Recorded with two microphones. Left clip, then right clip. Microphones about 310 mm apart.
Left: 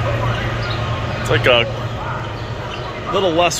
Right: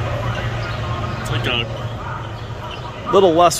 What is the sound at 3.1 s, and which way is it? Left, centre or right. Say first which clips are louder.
Speech: right 4 dB; right.